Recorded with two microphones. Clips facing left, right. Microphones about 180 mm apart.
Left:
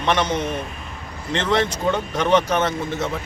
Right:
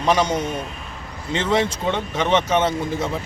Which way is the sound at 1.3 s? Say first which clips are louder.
Even; 5° right (ahead or behind).